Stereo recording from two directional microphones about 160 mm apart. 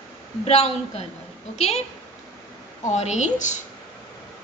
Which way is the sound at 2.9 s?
45° left (ahead or behind).